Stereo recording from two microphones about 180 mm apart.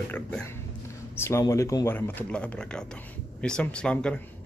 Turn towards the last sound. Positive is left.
turn(degrees=5)  # may be behind; listen again after turning